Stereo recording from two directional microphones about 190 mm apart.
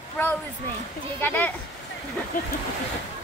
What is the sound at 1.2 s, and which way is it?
Speech, 10° left (ahead or behind).